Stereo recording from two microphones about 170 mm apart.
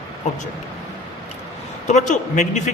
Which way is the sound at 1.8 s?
45° left (ahead or behind).